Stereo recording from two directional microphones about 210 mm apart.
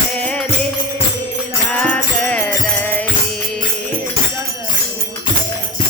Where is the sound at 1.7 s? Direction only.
5° left (ahead or behind).